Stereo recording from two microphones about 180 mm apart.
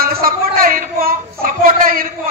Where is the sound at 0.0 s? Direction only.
55° right (ahead or behind).